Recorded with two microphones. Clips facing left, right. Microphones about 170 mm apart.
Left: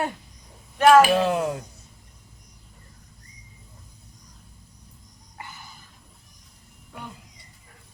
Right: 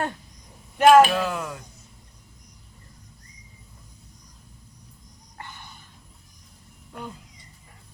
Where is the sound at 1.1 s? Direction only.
25° left (ahead or behind).